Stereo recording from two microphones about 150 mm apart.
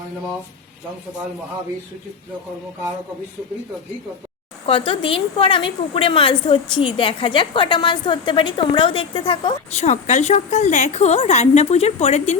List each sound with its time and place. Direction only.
4.6 s a woman's voice: 35° left (ahead or behind)